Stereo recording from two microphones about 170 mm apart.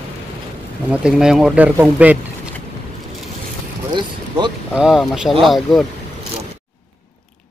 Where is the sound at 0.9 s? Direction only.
5° right (ahead or behind).